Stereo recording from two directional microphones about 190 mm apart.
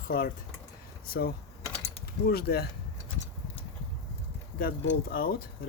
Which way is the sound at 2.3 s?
55° left (ahead or behind).